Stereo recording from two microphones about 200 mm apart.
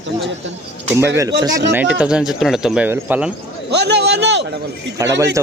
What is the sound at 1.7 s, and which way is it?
Speech, 5° right (ahead or behind).